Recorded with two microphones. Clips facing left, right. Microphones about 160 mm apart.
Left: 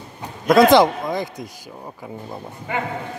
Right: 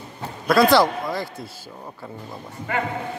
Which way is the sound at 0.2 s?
20° left (ahead or behind).